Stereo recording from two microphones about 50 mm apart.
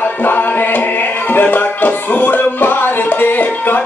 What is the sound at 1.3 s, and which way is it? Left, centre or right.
Music, left.